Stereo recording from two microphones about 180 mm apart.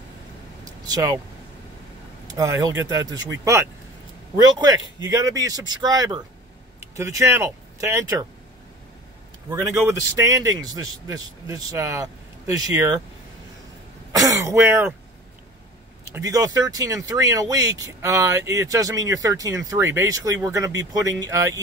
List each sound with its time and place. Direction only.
0.7 s a sound: 20° right (ahead or behind)
2.2 s speech: 20° right (ahead or behind)
9.5 s speech: 15° right (ahead or behind)
14.1 s speech: 20° right (ahead or behind)
16.2 s speech: 20° right (ahead or behind)